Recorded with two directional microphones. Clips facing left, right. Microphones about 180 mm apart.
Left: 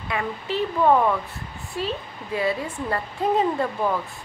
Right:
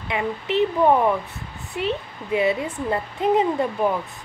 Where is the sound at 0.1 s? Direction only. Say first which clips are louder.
Right 4 dB; 20° right (ahead or behind).